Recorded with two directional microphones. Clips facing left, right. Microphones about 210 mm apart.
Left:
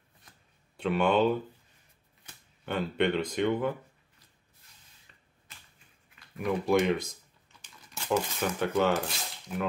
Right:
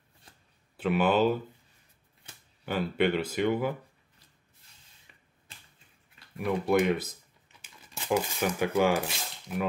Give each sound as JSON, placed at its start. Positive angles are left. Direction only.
{"t": 0.7, "sound": "speech", "side_deg": -5}
{"t": 2.6, "sound": "speech", "side_deg": -5}
{"t": 5.1, "sound": "finger snapping", "side_deg": -15}
{"t": 5.5, "sound": "finger snapping", "side_deg": -30}
{"t": 6.3, "sound": "speech", "side_deg": 0}
{"t": 8.1, "sound": "speech", "side_deg": -10}